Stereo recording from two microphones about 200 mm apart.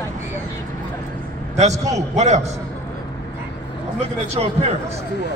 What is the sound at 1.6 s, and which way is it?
Speech, 35° right (ahead or behind).